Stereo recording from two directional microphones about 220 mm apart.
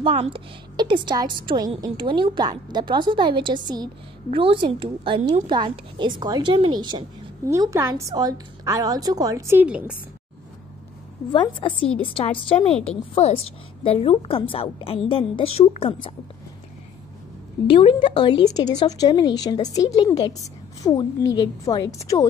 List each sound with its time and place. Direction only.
0.0 s a woman's voice: 25° right (ahead or behind); by 9.9 s 5° right (ahead or behind)
11.3 s a woman's voice: 20° left (ahead or behind)
17.6 s a woman's voice: 25° left (ahead or behind)